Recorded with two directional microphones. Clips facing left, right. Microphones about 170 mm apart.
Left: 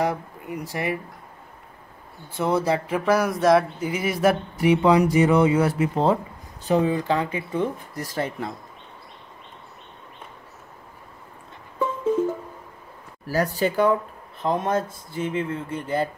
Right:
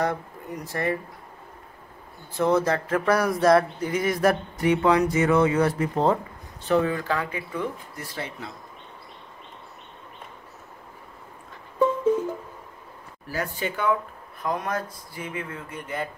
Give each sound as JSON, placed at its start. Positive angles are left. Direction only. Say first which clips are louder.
{"t": 0.0, "sound": "speech", "louder": "left 2 dB", "side_deg": 10}
{"t": 2.3, "sound": "speech", "louder": "even", "side_deg": 10}
{"t": 6.7, "sound": "speech", "louder": "left 2 dB", "side_deg": 20}
{"t": 7.9, "sound": "speech", "louder": "left 7 dB", "side_deg": 40}
{"t": 13.3, "sound": "speech", "louder": "left 7 dB", "side_deg": 40}
{"t": 14.4, "sound": "speech", "louder": "left 5 dB", "side_deg": 25}